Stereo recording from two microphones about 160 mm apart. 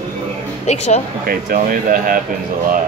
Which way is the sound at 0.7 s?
45° left (ahead or behind).